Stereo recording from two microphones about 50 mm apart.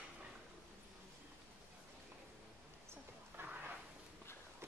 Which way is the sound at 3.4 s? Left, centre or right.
Right.